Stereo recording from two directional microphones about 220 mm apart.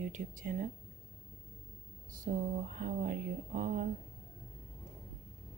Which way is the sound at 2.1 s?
35° right (ahead or behind).